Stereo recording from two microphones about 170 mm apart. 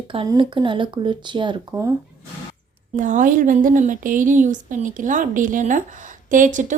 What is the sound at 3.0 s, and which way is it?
A woman's voice, 50° right (ahead or behind).